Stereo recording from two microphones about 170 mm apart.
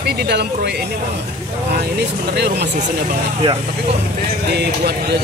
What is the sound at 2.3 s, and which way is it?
Speech, 80° right.